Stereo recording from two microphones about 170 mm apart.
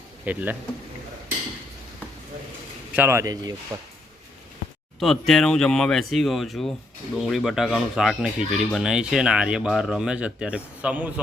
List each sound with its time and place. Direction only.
0.3 s speech: 10° right (ahead or behind)
2.9 s speech: 15° right (ahead or behind)
4.9 s speech: centre (ahead or behind)